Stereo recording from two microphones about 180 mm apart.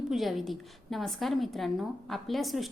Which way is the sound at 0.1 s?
Centre (ahead or behind).